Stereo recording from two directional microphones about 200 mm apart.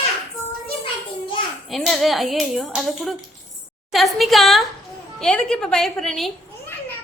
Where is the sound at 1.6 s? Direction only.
Centre (ahead or behind).